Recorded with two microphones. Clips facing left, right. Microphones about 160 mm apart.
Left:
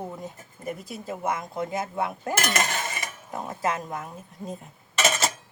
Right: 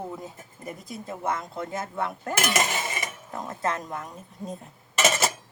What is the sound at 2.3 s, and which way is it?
Cutlery, 5° right (ahead or behind).